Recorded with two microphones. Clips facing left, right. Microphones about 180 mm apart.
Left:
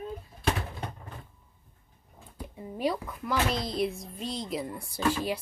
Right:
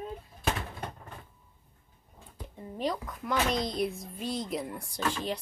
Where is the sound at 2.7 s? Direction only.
10° left (ahead or behind).